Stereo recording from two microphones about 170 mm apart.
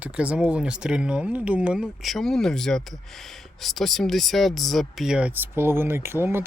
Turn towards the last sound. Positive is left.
turn(degrees=-15)  # may be behind; listen again after turning